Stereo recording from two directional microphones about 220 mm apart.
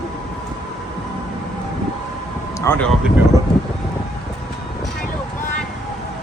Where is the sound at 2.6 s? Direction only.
10° left (ahead or behind).